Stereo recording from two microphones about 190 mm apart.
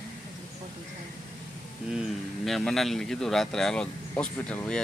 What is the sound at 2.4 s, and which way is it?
Speech, centre (ahead or behind).